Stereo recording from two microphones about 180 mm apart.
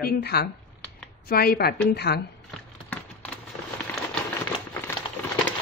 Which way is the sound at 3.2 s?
10° left (ahead or behind).